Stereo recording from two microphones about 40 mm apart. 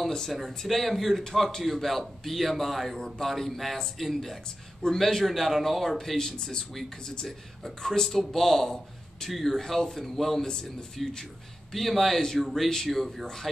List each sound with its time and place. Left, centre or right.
0.3 s a man's voice: centre
6.1 s a man's voice: centre
10.4 s speech: centre
11.7 s a man's voice: centre